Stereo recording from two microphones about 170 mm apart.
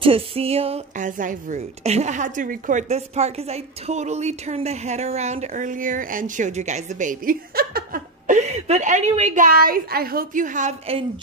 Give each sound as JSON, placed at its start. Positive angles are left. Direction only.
{"t": 0.0, "sound": "a woman's voice", "side_deg": -35}